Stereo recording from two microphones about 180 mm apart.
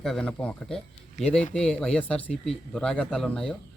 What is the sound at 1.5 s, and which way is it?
Speech, 5° left (ahead or behind).